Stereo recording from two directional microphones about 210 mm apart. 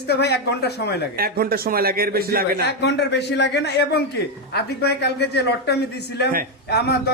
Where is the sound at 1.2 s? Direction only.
45° right (ahead or behind).